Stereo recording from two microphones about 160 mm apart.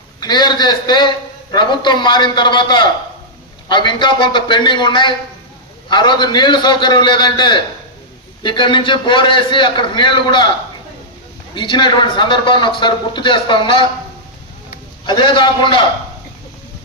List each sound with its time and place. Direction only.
0.2 s a man's voice: 25° left (ahead or behind)
11.5 s a man's voice: 30° left (ahead or behind)
15.0 s a man's voice: 30° left (ahead or behind)